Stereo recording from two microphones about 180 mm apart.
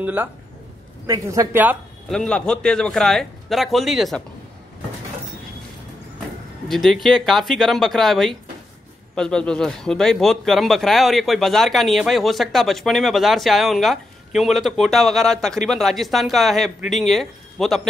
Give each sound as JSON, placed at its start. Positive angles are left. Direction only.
{"t": 0.0, "sound": "a man's voice", "side_deg": -10}
{"t": 2.0, "sound": "speech", "side_deg": 5}
{"t": 6.7, "sound": "speech", "side_deg": 0}